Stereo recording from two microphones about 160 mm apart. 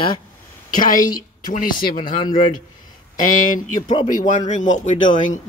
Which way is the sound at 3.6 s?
55° left (ahead or behind).